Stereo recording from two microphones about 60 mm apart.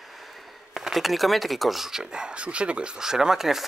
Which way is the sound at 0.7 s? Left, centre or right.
Centre.